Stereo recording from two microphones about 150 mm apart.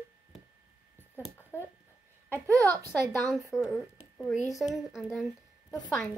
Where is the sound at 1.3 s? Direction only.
15° left (ahead or behind).